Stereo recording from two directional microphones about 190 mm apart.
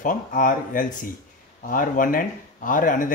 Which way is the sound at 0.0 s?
45° left (ahead or behind).